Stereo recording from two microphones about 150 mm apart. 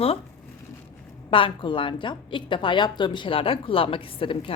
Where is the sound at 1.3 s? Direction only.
35° left (ahead or behind).